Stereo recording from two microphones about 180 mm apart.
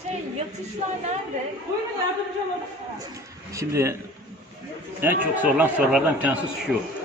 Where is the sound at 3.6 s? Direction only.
15° right (ahead or behind).